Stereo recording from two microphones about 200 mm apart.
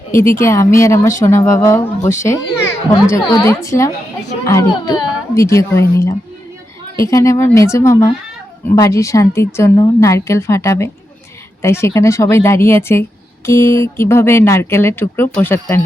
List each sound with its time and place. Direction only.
0.4 s a child's voice: 15° left (ahead or behind)